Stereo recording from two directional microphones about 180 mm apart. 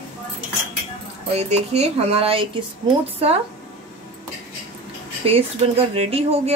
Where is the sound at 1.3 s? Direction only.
35° right (ahead or behind).